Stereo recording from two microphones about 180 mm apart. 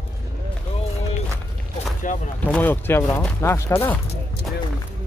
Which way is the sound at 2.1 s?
45° left (ahead or behind).